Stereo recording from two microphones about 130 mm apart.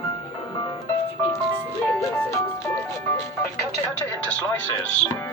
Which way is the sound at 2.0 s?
20° left (ahead or behind).